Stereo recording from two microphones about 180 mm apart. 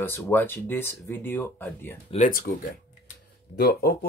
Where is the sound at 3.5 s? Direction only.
60° left (ahead or behind).